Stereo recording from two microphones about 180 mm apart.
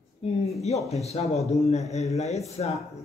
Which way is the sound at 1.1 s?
35° left (ahead or behind).